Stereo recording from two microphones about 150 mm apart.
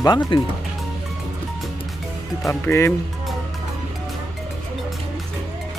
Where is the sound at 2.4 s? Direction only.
20° left (ahead or behind).